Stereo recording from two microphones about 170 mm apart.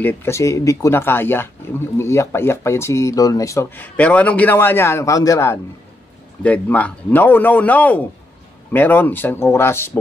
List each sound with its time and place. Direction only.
0.0 s speech: 15° left (ahead or behind)